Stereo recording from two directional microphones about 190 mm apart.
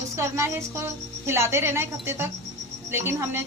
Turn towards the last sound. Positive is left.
turn(degrees=-15)  # may be behind; listen again after turning